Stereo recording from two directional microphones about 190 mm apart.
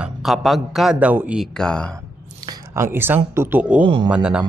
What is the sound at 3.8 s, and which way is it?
Speech, 25° right (ahead or behind).